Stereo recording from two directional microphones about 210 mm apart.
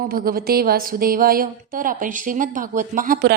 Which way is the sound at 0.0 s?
45° right (ahead or behind).